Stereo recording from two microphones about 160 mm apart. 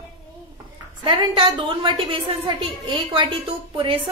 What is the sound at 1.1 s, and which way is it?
A woman's voice, 35° right (ahead or behind).